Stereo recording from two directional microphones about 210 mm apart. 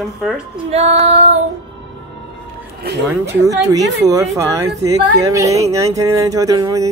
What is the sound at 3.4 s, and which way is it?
A woman's voice, 15° right (ahead or behind).